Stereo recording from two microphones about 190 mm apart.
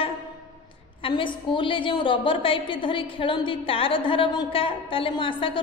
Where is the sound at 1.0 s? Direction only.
25° left (ahead or behind).